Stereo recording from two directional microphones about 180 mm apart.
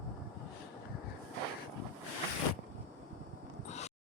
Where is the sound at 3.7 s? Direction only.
40° left (ahead or behind).